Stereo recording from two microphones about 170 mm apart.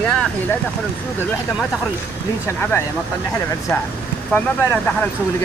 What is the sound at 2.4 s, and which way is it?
Speech, 15° left (ahead or behind).